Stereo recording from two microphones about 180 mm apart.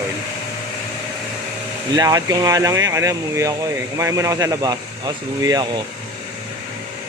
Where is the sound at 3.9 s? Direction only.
15° right (ahead or behind).